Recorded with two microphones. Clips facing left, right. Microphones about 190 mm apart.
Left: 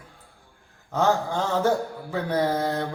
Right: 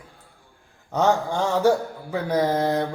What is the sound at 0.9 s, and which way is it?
Speech, 15° right (ahead or behind).